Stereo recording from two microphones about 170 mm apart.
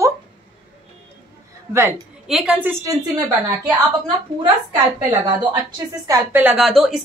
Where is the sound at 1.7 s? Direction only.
15° right (ahead or behind).